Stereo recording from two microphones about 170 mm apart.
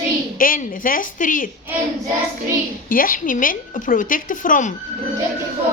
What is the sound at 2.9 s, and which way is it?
A woman's voice, 55° left (ahead or behind).